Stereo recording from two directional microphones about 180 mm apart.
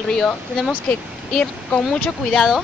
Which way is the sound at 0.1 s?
5° left (ahead or behind).